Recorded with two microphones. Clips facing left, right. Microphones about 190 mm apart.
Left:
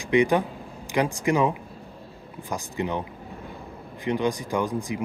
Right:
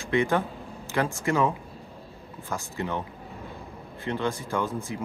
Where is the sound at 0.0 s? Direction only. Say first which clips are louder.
Left 4 dB; 15° left (ahead or behind).